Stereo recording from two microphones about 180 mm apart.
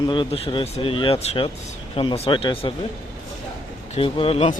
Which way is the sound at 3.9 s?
30° left (ahead or behind).